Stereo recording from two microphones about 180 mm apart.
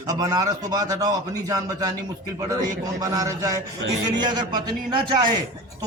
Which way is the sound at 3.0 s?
20° right (ahead or behind).